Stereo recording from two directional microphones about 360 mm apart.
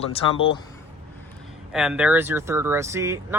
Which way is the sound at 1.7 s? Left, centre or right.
Centre.